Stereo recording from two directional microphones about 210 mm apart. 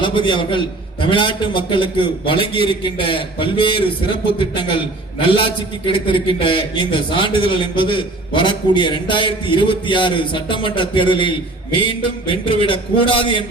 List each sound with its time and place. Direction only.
0.0 s a man's voice: 25° left (ahead or behind)